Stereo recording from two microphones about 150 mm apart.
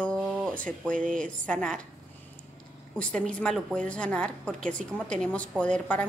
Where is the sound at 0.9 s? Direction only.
60° right (ahead or behind).